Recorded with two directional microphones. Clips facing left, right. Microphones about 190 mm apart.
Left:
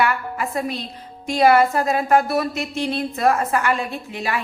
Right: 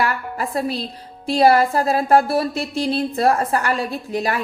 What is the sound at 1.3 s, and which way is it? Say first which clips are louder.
A woman's voice: right 1 dB; 35° right (ahead or behind).